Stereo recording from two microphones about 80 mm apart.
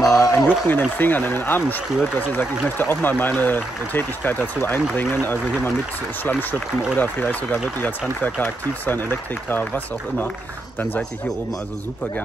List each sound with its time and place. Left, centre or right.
0.0 s a sound: left
0.5 s speech: left
7.0 s speech: left